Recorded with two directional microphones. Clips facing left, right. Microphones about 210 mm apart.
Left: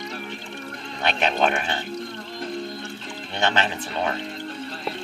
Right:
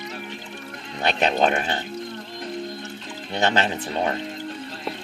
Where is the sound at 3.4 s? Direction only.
35° right (ahead or behind).